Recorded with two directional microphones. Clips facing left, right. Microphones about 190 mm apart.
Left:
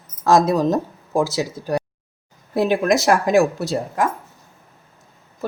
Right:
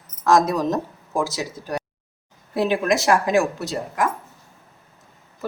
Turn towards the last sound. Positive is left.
turn(degrees=35)  # may be behind; listen again after turning